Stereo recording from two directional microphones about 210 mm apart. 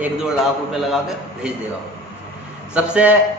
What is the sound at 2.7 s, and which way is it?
Speech, 5° right (ahead or behind).